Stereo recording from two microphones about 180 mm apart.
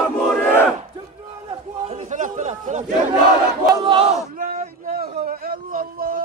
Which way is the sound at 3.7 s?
25° right (ahead or behind).